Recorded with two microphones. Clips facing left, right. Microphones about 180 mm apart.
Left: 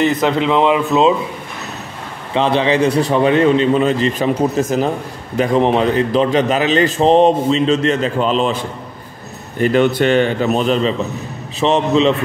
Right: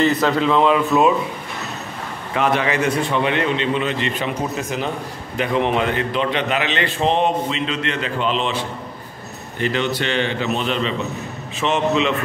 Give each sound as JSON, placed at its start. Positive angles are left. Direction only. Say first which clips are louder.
{"t": 0.0, "sound": "speech", "louder": "left 2 dB", "side_deg": 20}
{"t": 2.3, "sound": "a man's voice", "louder": "left 5 dB", "side_deg": 30}
{"t": 9.6, "sound": "a man's voice", "louder": "left 8 dB", "side_deg": 50}